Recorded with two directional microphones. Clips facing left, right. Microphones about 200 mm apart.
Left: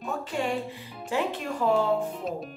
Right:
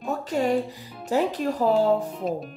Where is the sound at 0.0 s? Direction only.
40° right (ahead or behind).